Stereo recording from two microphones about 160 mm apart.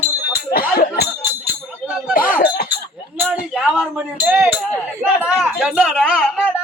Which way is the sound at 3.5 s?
5° right (ahead or behind).